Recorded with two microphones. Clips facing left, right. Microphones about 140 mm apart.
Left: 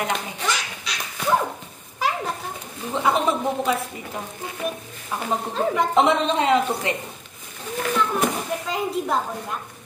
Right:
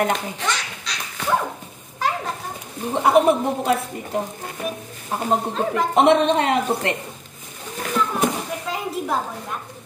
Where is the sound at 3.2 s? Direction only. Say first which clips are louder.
Right 11 dB; 65° right (ahead or behind).